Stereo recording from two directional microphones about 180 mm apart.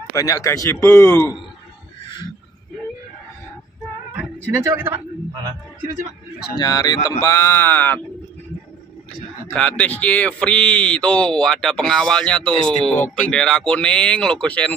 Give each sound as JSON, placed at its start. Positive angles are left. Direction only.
{"t": 0.1, "sound": "speech", "side_deg": 20}
{"t": 4.6, "sound": "speech", "side_deg": -10}
{"t": 6.5, "sound": "speech", "side_deg": 20}
{"t": 9.5, "sound": "speech", "side_deg": 5}